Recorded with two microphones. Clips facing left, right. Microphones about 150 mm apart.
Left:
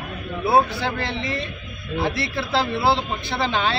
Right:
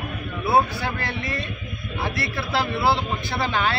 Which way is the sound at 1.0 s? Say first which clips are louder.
Left 2 dB; 25° left (ahead or behind).